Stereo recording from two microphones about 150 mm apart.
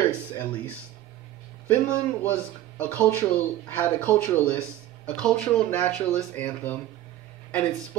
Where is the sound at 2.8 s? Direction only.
10° left (ahead or behind).